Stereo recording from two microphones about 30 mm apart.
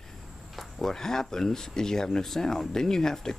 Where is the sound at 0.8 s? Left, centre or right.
Centre.